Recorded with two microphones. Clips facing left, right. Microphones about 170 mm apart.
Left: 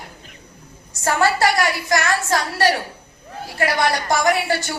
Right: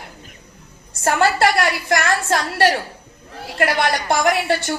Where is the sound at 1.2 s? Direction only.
65° right (ahead or behind).